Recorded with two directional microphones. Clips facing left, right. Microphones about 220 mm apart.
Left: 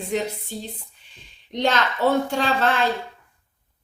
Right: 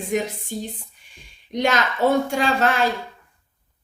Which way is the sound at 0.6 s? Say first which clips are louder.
Right 4 dB; 10° right (ahead or behind).